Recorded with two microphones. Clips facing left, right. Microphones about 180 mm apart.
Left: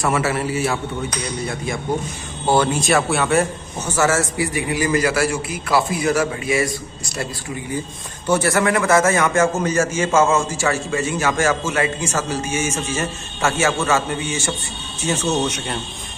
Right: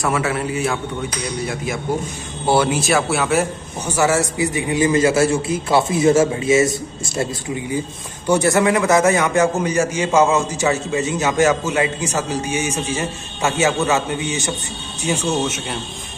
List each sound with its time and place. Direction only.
0.0 s speech: centre (ahead or behind)
2.4 s speech: 10° right (ahead or behind)
3.8 s a man's voice: 15° right (ahead or behind)
8.3 s a man's voice: 20° right (ahead or behind)